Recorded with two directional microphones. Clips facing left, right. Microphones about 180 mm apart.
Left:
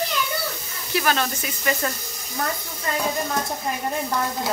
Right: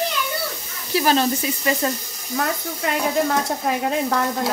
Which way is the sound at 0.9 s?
30° right (ahead or behind).